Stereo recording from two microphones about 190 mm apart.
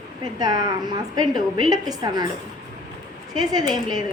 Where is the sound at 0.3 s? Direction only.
20° right (ahead or behind).